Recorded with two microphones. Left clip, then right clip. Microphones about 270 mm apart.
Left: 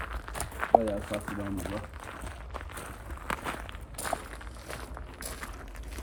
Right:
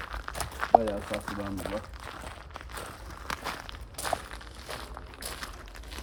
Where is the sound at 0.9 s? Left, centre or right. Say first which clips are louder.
Even; right.